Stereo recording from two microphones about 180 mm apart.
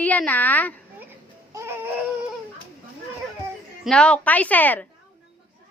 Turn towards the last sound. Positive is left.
turn(degrees=10)  # may be behind; listen again after turning